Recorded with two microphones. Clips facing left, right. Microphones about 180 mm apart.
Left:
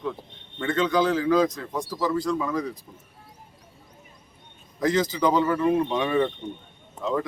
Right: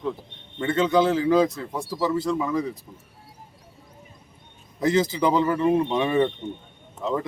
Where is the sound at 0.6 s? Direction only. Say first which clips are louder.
Right 2 dB; 25° right (ahead or behind).